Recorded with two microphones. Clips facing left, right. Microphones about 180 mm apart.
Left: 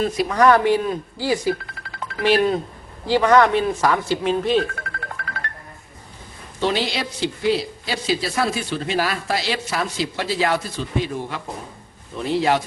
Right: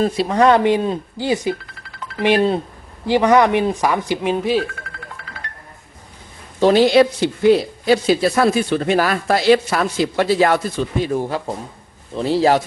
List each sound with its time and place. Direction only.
0.0 s speech: 30° right (ahead or behind); by 4.6 s 10° right (ahead or behind)
6.6 s speech: 45° right (ahead or behind)